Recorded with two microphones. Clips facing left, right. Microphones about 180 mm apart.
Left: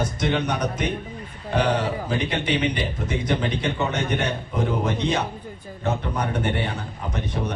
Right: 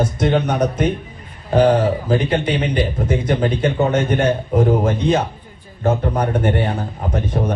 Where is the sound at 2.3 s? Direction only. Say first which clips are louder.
Right 5 dB; 50° right (ahead or behind).